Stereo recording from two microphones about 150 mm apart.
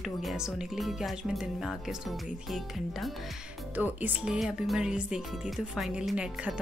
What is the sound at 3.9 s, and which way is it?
Speech, 10° right (ahead or behind).